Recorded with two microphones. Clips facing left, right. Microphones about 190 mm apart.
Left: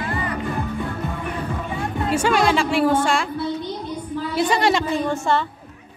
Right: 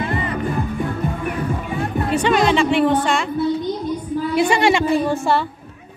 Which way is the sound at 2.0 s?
5° left (ahead or behind).